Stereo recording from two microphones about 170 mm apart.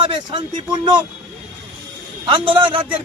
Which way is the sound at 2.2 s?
30° right (ahead or behind).